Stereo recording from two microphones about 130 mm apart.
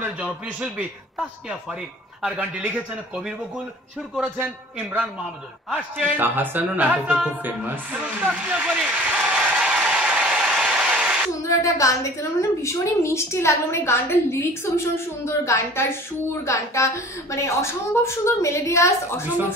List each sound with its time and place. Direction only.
0.2 s a man's voice: 10° right (ahead or behind)
2.3 s a man's voice: 10° right (ahead or behind)
5.7 s a woman's voice: 15° right (ahead or behind)
11.4 s a woman's voice: 25° left (ahead or behind)